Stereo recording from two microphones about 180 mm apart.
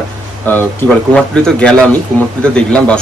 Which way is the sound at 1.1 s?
5° left (ahead or behind).